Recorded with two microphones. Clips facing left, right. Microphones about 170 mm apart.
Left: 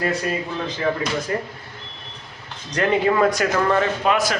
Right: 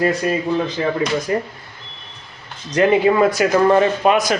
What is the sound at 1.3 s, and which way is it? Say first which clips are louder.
Speech: right 4 dB; 15° right (ahead or behind).